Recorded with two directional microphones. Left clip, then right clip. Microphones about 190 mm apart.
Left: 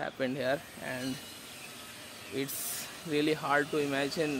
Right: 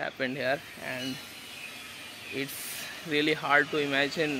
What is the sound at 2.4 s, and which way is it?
Speech, 15° left (ahead or behind).